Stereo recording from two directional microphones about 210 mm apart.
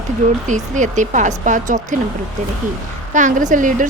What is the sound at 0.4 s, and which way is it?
A woman's voice, 35° right (ahead or behind).